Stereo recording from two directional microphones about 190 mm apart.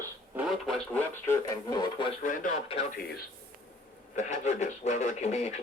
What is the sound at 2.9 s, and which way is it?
Speech, 55° left (ahead or behind).